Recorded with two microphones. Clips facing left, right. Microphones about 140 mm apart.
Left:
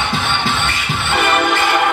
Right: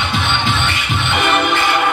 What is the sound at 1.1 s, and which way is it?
Music, 20° right (ahead or behind).